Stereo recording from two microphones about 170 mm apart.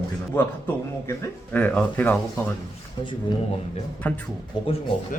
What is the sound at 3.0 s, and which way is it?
Speech, 30° left (ahead or behind).